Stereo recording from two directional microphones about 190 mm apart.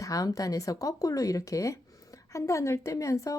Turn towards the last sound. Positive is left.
turn(degrees=15)  # may be behind; listen again after turning